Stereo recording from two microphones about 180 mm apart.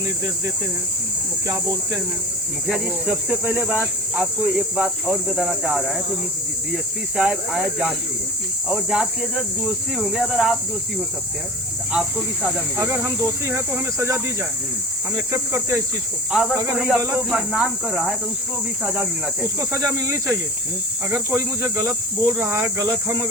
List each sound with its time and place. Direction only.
2.6 s speech: 5° right (ahead or behind)
7.2 s speech: 5° right (ahead or behind)
11.9 s speech: 5° right (ahead or behind)
12.8 s speech: 15° right (ahead or behind)
15.3 s speech: 15° right (ahead or behind)
16.3 s speech: centre (ahead or behind)
18.9 s speech: 15° right (ahead or behind)